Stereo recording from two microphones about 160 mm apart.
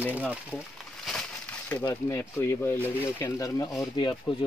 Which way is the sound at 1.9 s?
20° left (ahead or behind).